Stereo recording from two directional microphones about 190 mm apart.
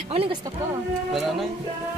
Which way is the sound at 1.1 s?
Centre (ahead or behind).